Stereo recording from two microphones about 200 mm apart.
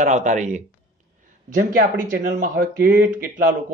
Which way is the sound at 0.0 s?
40° right (ahead or behind).